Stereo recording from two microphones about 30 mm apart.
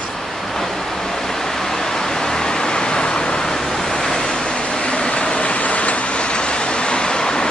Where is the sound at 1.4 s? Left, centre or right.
Centre.